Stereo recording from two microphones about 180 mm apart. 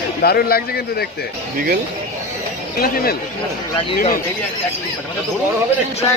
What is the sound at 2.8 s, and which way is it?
A man's voice, 55° left (ahead or behind).